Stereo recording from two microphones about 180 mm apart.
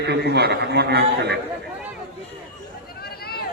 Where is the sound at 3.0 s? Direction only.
60° left (ahead or behind).